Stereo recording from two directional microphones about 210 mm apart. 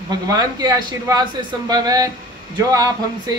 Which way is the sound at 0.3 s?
20° right (ahead or behind).